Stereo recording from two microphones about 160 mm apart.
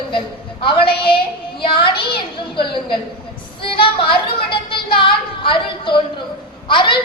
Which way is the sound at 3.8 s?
30° left (ahead or behind).